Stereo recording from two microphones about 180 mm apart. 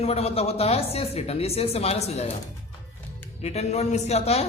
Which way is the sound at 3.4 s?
35° left (ahead or behind).